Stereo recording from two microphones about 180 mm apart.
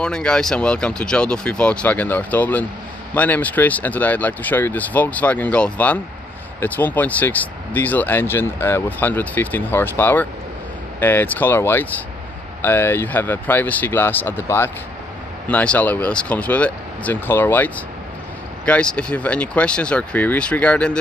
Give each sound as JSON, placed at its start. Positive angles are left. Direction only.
{"t": 0.0, "sound": "speech", "side_deg": 5}